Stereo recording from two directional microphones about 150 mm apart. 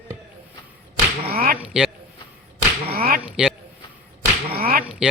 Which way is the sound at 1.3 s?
85° right.